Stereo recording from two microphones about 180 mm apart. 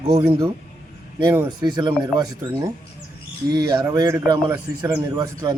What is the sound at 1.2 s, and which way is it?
Speech, 15° right (ahead or behind).